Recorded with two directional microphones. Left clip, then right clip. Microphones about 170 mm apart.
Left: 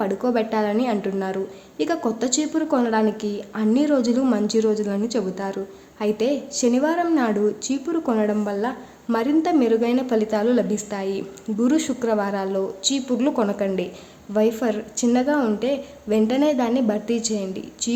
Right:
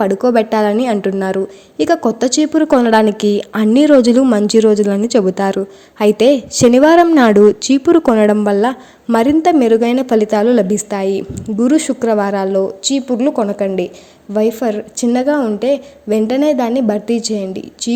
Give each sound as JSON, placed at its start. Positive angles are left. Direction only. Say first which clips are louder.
{"t": 0.0, "sound": "a woman's voice", "louder": "right 10 dB", "side_deg": -40}